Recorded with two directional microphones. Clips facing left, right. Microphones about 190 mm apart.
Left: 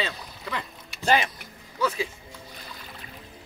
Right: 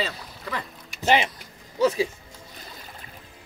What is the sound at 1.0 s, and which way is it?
Speech, 25° right (ahead or behind).